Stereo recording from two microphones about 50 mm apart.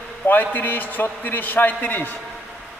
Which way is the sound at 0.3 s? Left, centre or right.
Left.